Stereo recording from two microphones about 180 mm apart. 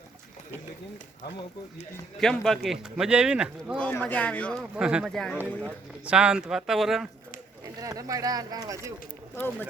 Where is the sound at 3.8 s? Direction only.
10° left (ahead or behind).